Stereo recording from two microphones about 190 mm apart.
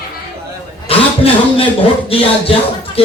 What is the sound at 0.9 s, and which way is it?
Chuckle, 30° left (ahead or behind).